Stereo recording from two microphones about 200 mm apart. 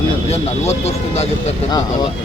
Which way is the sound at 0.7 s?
30° left (ahead or behind).